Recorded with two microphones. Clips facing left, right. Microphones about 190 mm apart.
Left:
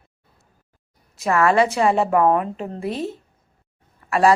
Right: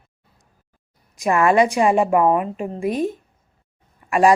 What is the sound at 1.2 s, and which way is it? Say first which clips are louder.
Speech: right 1 dB; 15° right (ahead or behind).